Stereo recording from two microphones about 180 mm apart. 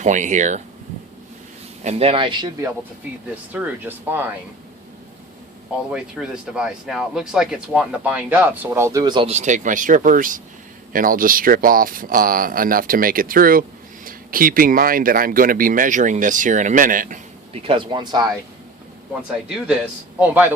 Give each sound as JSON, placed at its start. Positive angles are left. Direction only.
{"t": 0.0, "sound": "speech", "side_deg": -45}
{"t": 1.8, "sound": "speech", "side_deg": -35}
{"t": 3.5, "sound": "speech", "side_deg": -10}
{"t": 5.9, "sound": "speech", "side_deg": -5}
{"t": 17.5, "sound": "speech", "side_deg": -30}
{"t": 20.1, "sound": "speech", "side_deg": -10}